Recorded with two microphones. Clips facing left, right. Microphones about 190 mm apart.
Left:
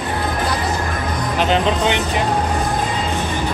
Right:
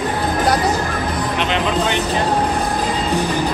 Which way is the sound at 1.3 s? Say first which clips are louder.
Left 5 dB; 40° left (ahead or behind).